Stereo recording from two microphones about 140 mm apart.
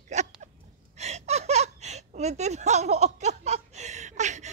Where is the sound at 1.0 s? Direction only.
50° right (ahead or behind).